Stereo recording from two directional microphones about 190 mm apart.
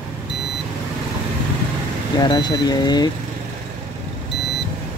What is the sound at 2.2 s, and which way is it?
Speech, 20° left (ahead or behind).